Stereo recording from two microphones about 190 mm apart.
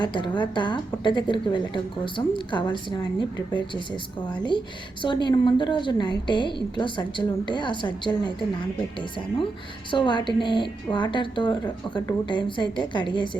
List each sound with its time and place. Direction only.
0.0 s speech: 25° left (ahead or behind)
5.0 s speech: 25° left (ahead or behind)
9.9 s speech: 25° left (ahead or behind)